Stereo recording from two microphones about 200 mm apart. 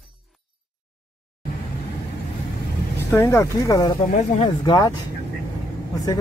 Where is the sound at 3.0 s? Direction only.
15° left (ahead or behind).